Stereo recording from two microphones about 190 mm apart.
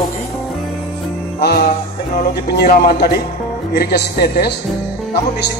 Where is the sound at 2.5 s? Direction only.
55° left (ahead or behind).